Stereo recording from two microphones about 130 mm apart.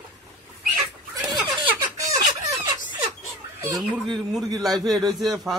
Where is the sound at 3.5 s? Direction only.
25° right (ahead or behind).